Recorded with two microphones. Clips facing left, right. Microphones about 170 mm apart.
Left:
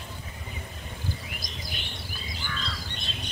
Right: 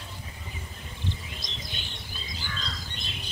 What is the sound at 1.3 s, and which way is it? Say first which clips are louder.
Bird: left 1 dB; 25° right (ahead or behind).